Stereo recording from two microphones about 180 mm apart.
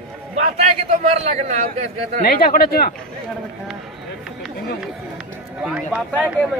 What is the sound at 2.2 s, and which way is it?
Speech, 55° left (ahead or behind).